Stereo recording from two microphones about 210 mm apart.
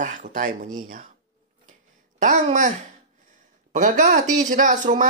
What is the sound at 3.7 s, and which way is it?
Speech, 40° right (ahead or behind).